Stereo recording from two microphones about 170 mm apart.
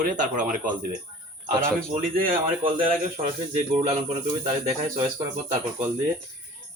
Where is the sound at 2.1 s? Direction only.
55° right (ahead or behind).